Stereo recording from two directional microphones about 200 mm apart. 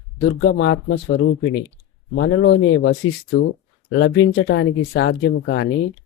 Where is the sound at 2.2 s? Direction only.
70° left (ahead or behind).